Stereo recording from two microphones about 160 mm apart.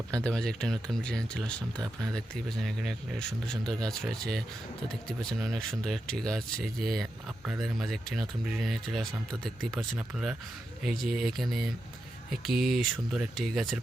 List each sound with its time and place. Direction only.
0.1 s speech: 5° left (ahead or behind)